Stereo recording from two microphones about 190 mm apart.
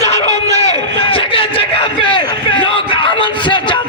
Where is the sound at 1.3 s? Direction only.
30° left (ahead or behind).